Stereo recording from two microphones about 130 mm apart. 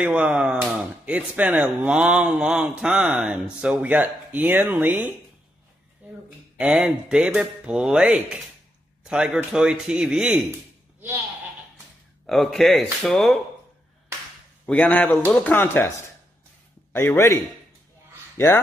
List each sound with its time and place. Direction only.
0.0 s speech: 10° right (ahead or behind)
6.6 s speech: 5° right (ahead or behind)
12.3 s speech: centre (ahead or behind)
14.7 s a man's voice: 10° left (ahead or behind)